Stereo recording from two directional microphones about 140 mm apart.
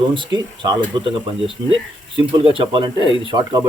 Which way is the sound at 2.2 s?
40° right (ahead or behind).